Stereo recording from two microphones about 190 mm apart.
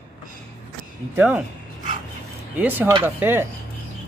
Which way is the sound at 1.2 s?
5° right (ahead or behind).